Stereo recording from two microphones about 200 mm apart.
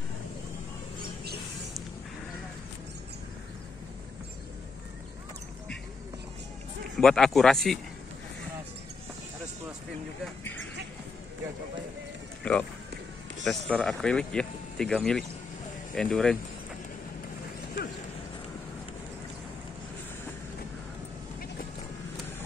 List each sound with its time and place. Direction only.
7.0 s speech: centre (ahead or behind)
12.4 s speech: 5° left (ahead or behind)